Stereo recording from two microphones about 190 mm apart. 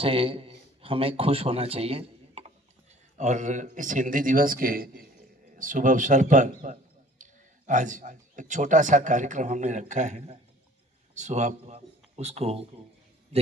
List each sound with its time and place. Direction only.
0.0 s a man's voice: 30° right (ahead or behind)